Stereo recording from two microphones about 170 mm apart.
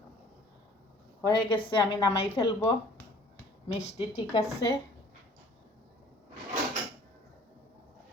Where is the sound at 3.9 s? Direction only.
30° left (ahead or behind).